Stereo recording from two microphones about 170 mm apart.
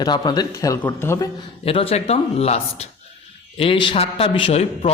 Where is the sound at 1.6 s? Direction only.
35° left (ahead or behind).